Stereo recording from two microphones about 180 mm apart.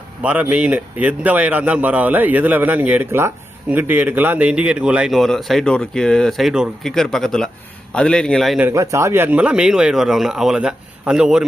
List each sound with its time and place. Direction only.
0.2 s a man's voice: 5° right (ahead or behind)
8.6 s speech: 15° right (ahead or behind)